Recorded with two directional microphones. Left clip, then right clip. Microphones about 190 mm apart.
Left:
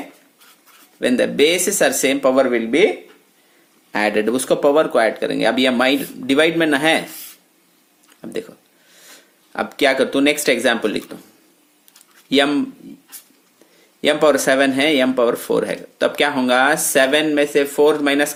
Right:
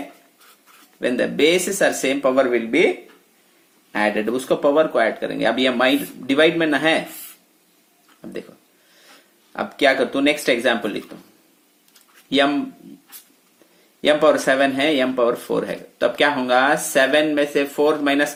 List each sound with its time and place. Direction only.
0.9 s speech: 30° left (ahead or behind)
3.9 s speech: 30° left (ahead or behind)
8.2 s speech: 30° left (ahead or behind)
14.0 s speech: 30° left (ahead or behind)